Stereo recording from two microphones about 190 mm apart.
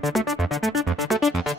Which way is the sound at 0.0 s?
Centre (ahead or behind).